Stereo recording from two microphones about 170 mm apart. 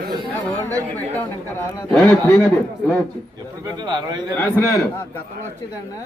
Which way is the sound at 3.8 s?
25° right (ahead or behind).